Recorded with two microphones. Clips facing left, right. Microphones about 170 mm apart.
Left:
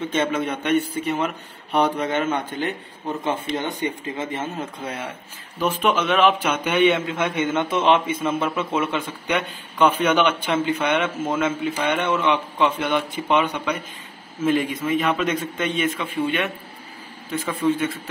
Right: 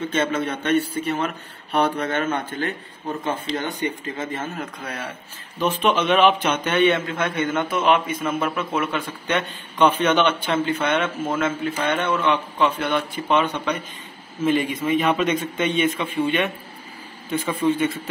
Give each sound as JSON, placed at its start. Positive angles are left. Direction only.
{"t": 0.1, "sound": "a man's voice", "side_deg": 15}
{"t": 5.6, "sound": "a man's voice", "side_deg": 5}
{"t": 9.4, "sound": "a man's voice", "side_deg": 10}
{"t": 14.4, "sound": "a man's voice", "side_deg": 0}